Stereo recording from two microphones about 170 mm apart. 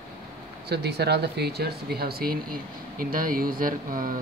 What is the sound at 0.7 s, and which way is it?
Speech, 75° right (ahead or behind).